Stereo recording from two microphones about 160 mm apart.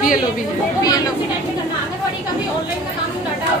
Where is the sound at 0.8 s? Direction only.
25° left (ahead or behind).